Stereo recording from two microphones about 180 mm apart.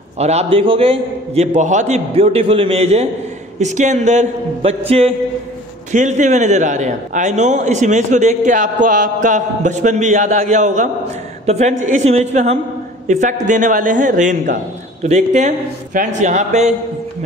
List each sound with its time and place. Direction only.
0.2 s a man's voice: 35° right (ahead or behind)